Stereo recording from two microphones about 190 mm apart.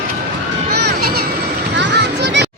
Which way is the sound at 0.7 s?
60° right (ahead or behind).